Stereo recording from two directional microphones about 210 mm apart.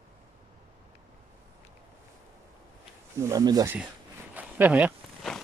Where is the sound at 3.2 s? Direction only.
15° right (ahead or behind).